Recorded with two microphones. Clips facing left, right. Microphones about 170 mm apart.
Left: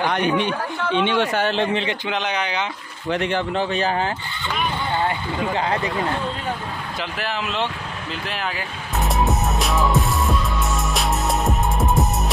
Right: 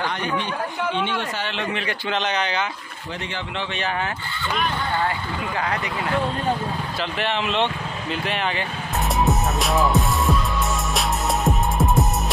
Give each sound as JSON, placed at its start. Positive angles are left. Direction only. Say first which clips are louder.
{"t": 0.9, "sound": "speech", "louder": "left 6 dB", "side_deg": 80}
{"t": 1.4, "sound": "a man's voice", "louder": "left 6 dB", "side_deg": 35}
{"t": 2.0, "sound": "speech", "louder": "even", "side_deg": 10}
{"t": 3.1, "sound": "speech", "louder": "left 9 dB", "side_deg": 60}
{"t": 3.7, "sound": "a man's voice", "louder": "left 2 dB", "side_deg": 35}
{"t": 4.9, "sound": "speech", "louder": "left 2 dB", "side_deg": 25}
{"t": 7.2, "sound": "speech", "louder": "right 3 dB", "side_deg": 0}
{"t": 8.1, "sound": "music", "louder": "right 3 dB", "side_deg": 0}